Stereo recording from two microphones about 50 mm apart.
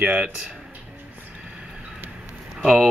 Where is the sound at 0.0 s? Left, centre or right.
Right.